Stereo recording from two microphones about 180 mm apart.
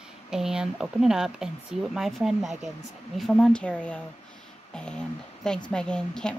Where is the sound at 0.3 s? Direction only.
5° right (ahead or behind).